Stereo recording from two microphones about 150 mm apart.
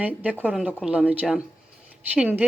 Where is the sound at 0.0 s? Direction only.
10° right (ahead or behind).